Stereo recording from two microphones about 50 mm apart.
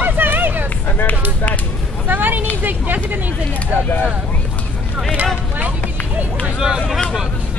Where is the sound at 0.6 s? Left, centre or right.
Left.